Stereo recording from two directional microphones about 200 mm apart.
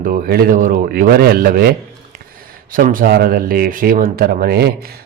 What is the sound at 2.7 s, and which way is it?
Speech, 45° right (ahead or behind).